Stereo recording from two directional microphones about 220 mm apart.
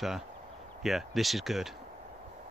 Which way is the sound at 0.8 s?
Centre (ahead or behind).